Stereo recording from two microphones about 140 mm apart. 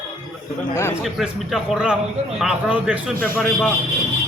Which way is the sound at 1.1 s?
5° right (ahead or behind).